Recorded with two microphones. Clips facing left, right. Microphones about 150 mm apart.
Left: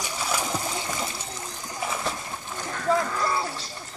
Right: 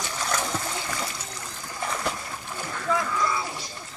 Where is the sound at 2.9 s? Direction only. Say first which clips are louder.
Left 2 dB; 40° left (ahead or behind).